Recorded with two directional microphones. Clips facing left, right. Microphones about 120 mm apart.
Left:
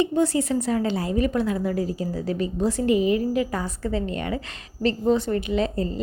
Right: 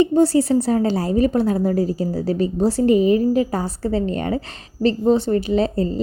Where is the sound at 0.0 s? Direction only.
35° right (ahead or behind).